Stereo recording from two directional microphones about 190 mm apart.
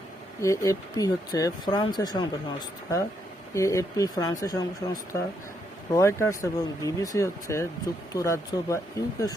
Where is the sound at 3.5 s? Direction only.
15° left (ahead or behind).